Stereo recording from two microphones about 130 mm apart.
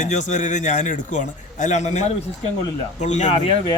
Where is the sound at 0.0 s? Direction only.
65° left (ahead or behind).